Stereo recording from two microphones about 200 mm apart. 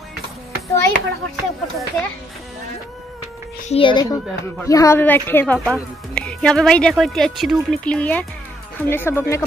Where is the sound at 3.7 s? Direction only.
25° left (ahead or behind).